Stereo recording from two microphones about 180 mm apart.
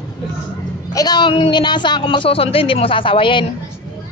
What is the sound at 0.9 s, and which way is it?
A woman's voice, 20° left (ahead or behind).